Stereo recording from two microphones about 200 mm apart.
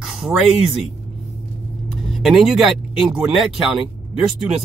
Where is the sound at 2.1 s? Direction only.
Centre (ahead or behind).